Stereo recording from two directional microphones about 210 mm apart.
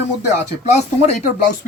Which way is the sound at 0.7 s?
30° left (ahead or behind).